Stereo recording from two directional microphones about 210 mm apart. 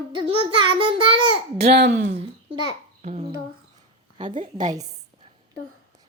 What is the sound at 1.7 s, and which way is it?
Speech, 50° right (ahead or behind).